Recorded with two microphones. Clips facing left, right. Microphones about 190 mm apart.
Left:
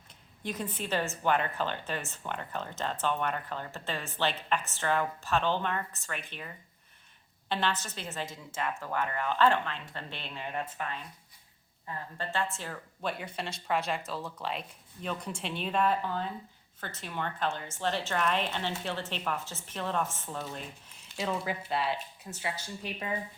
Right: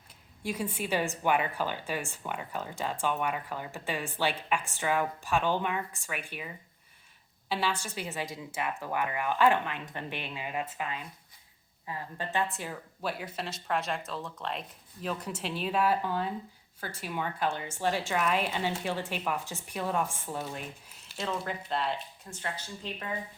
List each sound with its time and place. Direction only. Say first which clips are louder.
0.4 s a woman's voice: right 2 dB; 10° right (ahead or behind)
13.0 s a woman's voice: even; 5° right (ahead or behind)
21.2 s speech: left 1 dB; 5° left (ahead or behind)